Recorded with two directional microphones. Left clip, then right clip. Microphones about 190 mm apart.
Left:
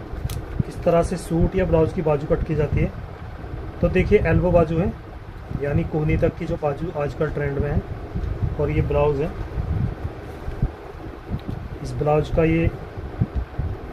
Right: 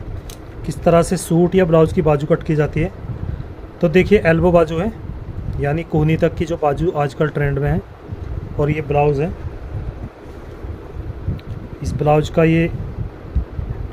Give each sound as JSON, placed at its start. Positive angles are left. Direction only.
{"t": 0.8, "sound": "speech", "side_deg": -55}
{"t": 11.8, "sound": "speech", "side_deg": -50}